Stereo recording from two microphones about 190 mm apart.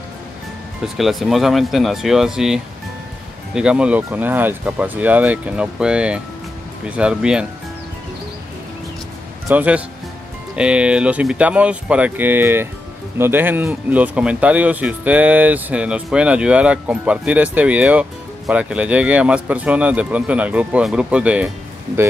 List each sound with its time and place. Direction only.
0.9 s speech: centre (ahead or behind)
9.5 s speech: 10° right (ahead or behind)